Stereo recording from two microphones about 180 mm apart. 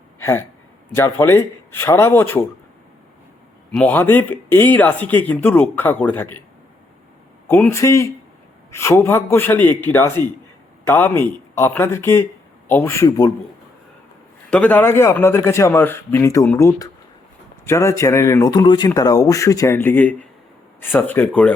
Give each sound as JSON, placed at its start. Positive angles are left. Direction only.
{"t": 0.2, "sound": "speech", "side_deg": 15}
{"t": 3.7, "sound": "speech", "side_deg": 10}
{"t": 7.4, "sound": "speech", "side_deg": 10}
{"t": 14.5, "sound": "speech", "side_deg": 10}